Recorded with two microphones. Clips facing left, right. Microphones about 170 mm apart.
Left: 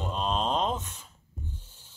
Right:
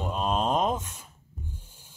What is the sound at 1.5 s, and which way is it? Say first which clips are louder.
Owl: right 1 dB; 10° right (ahead or behind).